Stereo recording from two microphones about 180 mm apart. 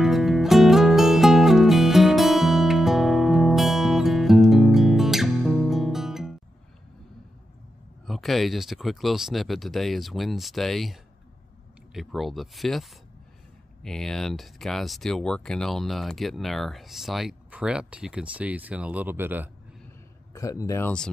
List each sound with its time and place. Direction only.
0.0 s music: centre (ahead or behind)
8.1 s speech: centre (ahead or behind)
13.8 s speech: 5° left (ahead or behind)
20.3 s speech: 20° left (ahead or behind)